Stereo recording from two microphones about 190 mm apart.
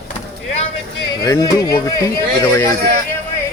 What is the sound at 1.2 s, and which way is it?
Speech, 20° left (ahead or behind).